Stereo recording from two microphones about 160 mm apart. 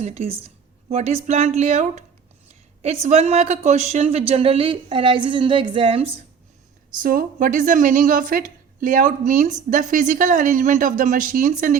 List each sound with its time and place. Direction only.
0.0 s a woman's voice: 40° right (ahead or behind)
6.9 s a woman's voice: 60° right (ahead or behind)